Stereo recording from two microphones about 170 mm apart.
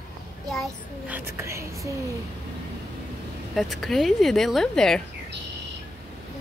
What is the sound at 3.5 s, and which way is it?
A woman's voice, centre (ahead or behind).